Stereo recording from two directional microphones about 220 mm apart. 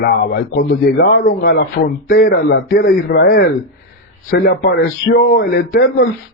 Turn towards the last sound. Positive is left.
turn(degrees=45)  # may be behind; listen again after turning